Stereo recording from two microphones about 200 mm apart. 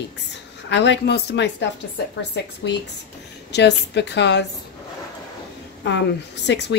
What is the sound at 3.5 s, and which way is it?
Speech, 60° left (ahead or behind).